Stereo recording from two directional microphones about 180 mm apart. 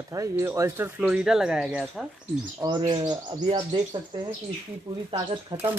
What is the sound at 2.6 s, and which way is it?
Speech, 25° right (ahead or behind).